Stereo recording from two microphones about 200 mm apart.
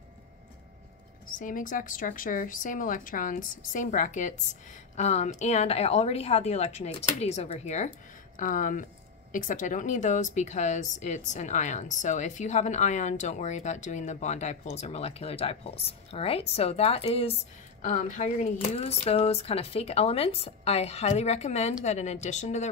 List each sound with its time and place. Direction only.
1.4 s a woman's voice: 40° left (ahead or behind)